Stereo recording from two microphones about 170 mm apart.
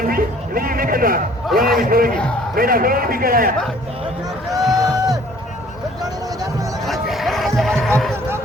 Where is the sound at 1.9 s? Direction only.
60° right (ahead or behind).